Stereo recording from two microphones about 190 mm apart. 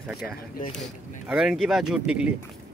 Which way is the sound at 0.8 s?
5° right (ahead or behind).